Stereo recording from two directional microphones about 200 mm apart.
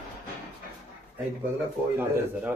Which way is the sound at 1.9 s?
10° right (ahead or behind).